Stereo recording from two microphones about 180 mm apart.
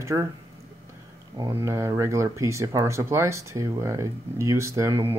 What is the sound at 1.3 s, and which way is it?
Speech, 20° right (ahead or behind).